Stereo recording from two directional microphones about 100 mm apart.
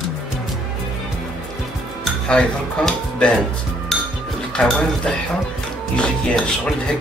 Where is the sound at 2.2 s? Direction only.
10° left (ahead or behind).